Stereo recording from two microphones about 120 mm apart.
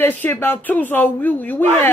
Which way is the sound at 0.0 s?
15° left (ahead or behind).